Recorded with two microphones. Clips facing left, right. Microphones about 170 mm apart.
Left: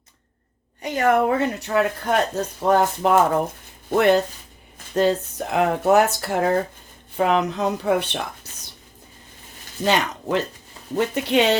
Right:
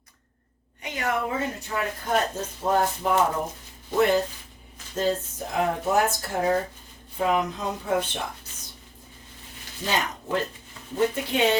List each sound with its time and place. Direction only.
0.8 s speech: 45° left (ahead or behind); by 8.2 s 70° left (ahead or behind)
9.8 s speech: 75° left (ahead or behind)